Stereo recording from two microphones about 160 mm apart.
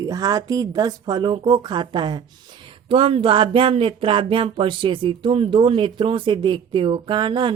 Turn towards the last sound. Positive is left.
turn(degrees=-30)  # may be behind; listen again after turning